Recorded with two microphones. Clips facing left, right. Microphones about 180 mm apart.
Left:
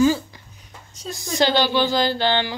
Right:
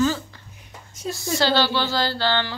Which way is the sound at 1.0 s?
15° left (ahead or behind).